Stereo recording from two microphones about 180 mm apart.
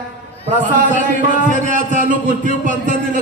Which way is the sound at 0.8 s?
45° right (ahead or behind).